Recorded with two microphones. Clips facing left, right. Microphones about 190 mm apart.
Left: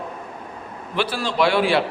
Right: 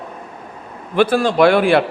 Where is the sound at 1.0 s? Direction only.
50° right (ahead or behind).